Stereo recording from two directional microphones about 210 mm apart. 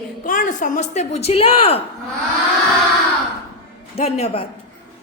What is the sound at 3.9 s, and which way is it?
Speech, 30° left (ahead or behind).